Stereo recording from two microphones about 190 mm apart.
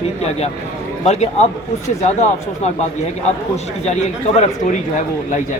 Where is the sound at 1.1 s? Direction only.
35° left (ahead or behind).